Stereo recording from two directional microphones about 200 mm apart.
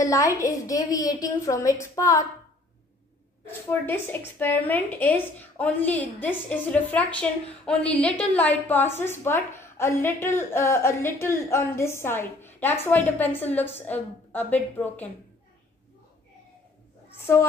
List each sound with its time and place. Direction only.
0.0 s a woman's voice: 15° left (ahead or behind)
3.6 s a woman's voice: 10° left (ahead or behind)
17.2 s a sound: 15° left (ahead or behind)